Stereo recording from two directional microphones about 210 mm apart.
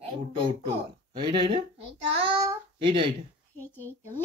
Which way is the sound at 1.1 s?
20° right (ahead or behind).